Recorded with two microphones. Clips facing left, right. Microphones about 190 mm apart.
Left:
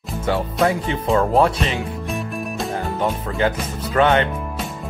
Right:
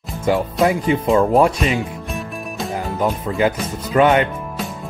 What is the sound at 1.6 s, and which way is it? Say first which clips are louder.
Music: right 3 dB; centre (ahead or behind).